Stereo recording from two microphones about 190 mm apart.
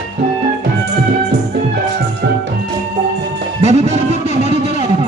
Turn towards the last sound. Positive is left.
turn(degrees=-35)  # may be behind; listen again after turning